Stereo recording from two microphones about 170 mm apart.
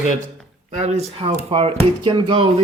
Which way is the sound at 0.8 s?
35° right (ahead or behind).